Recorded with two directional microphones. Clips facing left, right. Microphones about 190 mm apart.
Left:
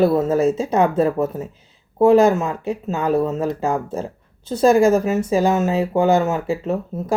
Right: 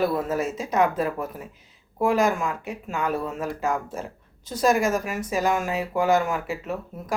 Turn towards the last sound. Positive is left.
turn(degrees=25)  # may be behind; listen again after turning